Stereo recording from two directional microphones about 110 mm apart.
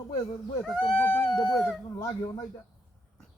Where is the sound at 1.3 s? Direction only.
40° left (ahead or behind).